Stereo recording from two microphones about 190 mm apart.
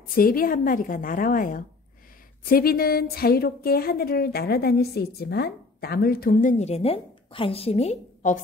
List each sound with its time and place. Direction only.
0.1 s a woman's voice: 50° left (ahead or behind)